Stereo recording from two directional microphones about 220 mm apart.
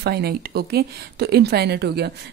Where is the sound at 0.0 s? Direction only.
45° right (ahead or behind).